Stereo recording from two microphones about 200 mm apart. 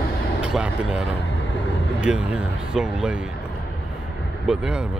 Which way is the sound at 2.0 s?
5° right (ahead or behind).